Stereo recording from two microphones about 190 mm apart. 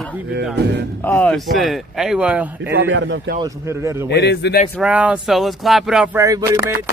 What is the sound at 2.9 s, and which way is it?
Speech, 70° right (ahead or behind).